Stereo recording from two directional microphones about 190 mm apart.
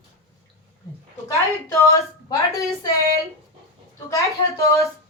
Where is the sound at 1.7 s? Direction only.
15° left (ahead or behind).